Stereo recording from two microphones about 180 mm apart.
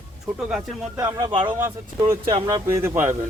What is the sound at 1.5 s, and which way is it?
Speech, 10° right (ahead or behind).